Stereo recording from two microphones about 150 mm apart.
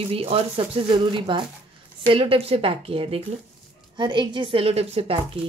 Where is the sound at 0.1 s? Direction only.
40° right (ahead or behind).